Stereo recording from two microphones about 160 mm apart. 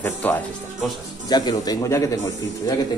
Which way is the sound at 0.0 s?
10° left (ahead or behind).